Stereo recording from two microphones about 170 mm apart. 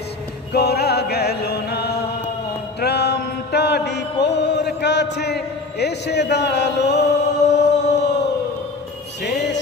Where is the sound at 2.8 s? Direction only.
75° left (ahead or behind).